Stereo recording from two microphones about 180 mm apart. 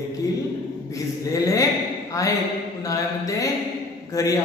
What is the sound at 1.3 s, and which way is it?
Speech, 20° left (ahead or behind).